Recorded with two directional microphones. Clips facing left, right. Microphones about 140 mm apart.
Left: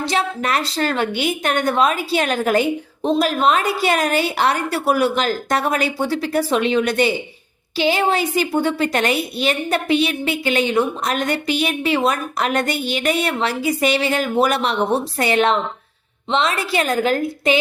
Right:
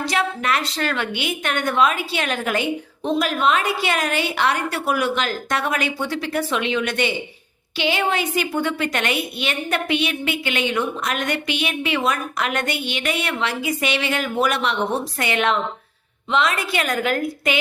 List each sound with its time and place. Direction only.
0.0 s a woman's voice: 30° left (ahead or behind)